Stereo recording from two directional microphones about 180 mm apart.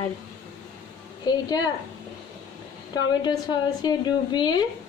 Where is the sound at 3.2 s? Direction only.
25° left (ahead or behind).